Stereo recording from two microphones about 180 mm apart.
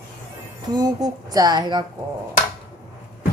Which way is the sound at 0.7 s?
20° right (ahead or behind).